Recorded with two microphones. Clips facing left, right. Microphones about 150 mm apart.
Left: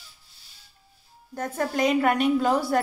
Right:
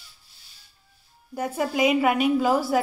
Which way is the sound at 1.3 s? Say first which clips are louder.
Right 1 dB; 10° right (ahead or behind).